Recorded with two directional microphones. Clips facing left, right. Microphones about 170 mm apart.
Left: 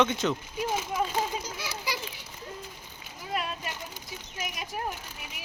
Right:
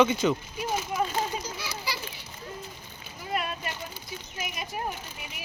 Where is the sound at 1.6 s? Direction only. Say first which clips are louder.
Left 1 dB; 15° left (ahead or behind).